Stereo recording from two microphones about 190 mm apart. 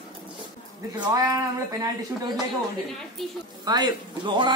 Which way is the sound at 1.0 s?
20° right (ahead or behind).